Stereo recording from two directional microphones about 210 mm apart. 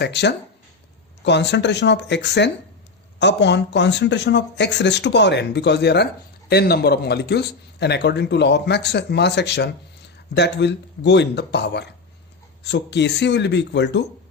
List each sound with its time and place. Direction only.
0.0 s speech: 55° left (ahead or behind)